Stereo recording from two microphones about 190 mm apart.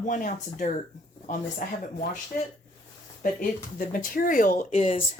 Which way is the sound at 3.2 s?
45° left (ahead or behind).